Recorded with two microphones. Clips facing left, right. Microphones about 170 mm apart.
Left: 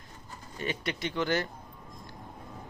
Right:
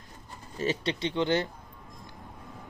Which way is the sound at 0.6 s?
30° right (ahead or behind).